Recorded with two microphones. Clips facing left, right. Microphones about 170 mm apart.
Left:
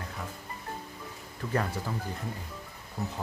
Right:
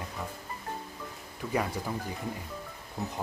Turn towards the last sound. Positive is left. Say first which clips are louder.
# even
turn(degrees=0)  # may be behind; listen again after turning